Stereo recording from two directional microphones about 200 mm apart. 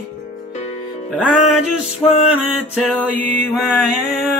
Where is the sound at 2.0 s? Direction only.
10° left (ahead or behind).